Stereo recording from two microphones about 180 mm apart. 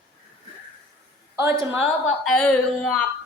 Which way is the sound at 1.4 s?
15° right (ahead or behind).